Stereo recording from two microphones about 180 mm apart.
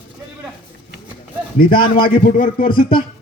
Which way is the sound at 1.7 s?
30° left (ahead or behind).